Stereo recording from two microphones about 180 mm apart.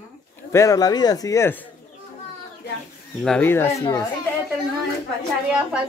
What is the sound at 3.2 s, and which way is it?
Speech, 5° left (ahead or behind).